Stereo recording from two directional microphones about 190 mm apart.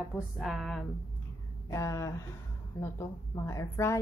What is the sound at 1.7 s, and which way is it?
A woman's voice, 15° left (ahead or behind).